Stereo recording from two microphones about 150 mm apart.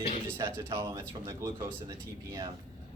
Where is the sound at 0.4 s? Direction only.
20° right (ahead or behind).